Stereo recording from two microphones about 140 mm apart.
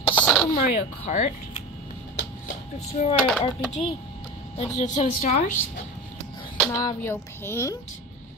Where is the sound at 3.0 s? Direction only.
60° left (ahead or behind).